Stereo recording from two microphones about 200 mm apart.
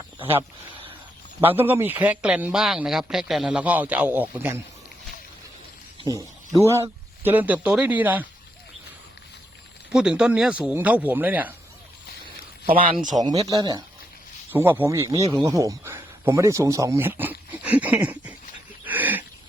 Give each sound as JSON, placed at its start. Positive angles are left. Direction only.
{"t": 1.4, "sound": "a man's voice", "side_deg": -10}
{"t": 6.0, "sound": "a man's voice", "side_deg": -15}
{"t": 9.9, "sound": "a man's voice", "side_deg": -5}
{"t": 12.7, "sound": "speech", "side_deg": -45}
{"t": 13.1, "sound": "a man's voice", "side_deg": -20}
{"t": 18.9, "sound": "a sound", "side_deg": -10}